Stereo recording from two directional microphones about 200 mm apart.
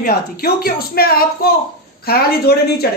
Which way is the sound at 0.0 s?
50° left (ahead or behind).